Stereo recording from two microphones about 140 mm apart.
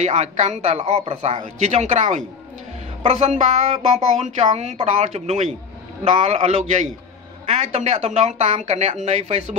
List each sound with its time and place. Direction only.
0.0 s speech: 55° right (ahead or behind)